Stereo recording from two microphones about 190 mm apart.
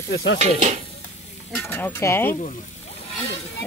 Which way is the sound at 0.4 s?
35° right (ahead or behind).